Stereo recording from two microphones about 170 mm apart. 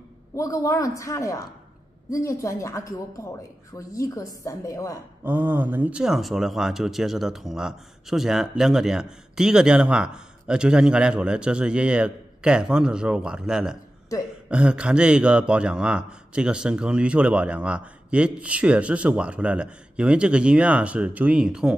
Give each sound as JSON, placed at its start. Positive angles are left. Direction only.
{"t": 0.4, "sound": "a woman's voice", "side_deg": 20}
{"t": 5.2, "sound": "a man's voice", "side_deg": -10}